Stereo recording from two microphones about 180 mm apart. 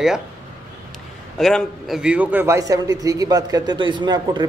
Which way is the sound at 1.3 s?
Centre (ahead or behind).